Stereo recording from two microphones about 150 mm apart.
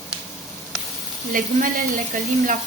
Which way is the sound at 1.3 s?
65° right (ahead or behind).